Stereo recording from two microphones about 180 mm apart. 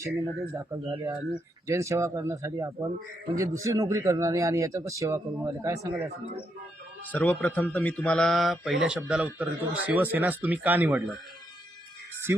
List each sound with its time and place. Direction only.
0.0 s speech: 15° right (ahead or behind)
7.1 s speech: 10° left (ahead or behind); by 11.0 s 10° right (ahead or behind)